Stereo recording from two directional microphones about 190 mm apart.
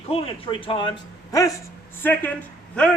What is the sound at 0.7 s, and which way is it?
Speech, 25° left (ahead or behind).